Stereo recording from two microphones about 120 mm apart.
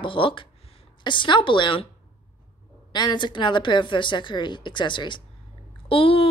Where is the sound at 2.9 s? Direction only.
40° left (ahead or behind).